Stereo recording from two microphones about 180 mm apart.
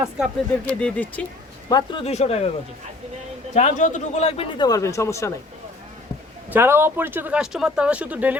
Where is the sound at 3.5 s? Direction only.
40° left (ahead or behind).